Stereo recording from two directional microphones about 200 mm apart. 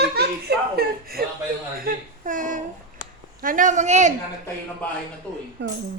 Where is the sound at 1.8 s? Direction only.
45° right (ahead or behind).